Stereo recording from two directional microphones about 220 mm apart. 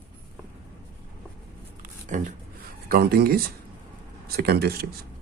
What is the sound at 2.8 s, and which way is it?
Speech, 45° right (ahead or behind).